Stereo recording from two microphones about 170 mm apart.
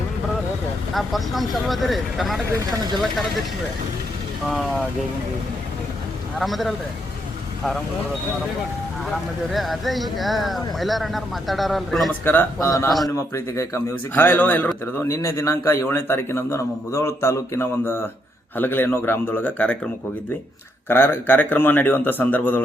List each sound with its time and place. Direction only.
0.9 s speech: centre (ahead or behind)
6.4 s speech: centre (ahead or behind)
9.5 s speech: centre (ahead or behind)
12.2 s a man's voice: 10° left (ahead or behind)
20.8 s a man's voice: 10° left (ahead or behind)